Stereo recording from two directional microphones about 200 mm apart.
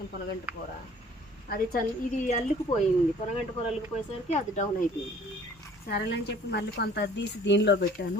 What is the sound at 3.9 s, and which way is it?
Speech, 35° left (ahead or behind).